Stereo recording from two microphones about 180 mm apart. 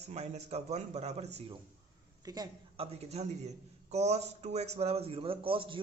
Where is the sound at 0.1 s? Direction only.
35° right (ahead or behind).